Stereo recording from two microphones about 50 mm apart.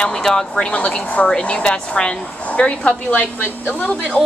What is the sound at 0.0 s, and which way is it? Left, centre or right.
A woman's voice, centre.